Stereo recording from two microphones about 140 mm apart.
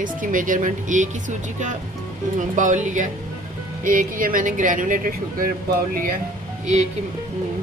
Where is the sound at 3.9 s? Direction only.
80° right.